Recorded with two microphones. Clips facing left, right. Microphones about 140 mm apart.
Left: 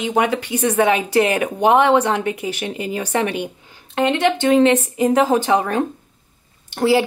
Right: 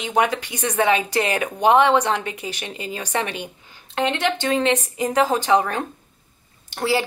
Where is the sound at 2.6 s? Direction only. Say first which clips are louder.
Left 7 dB; 20° left (ahead or behind).